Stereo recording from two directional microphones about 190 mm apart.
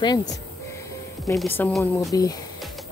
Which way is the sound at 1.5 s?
10° left (ahead or behind).